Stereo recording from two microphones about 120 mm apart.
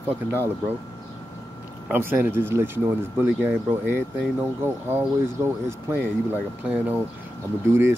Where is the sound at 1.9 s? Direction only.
15° right (ahead or behind).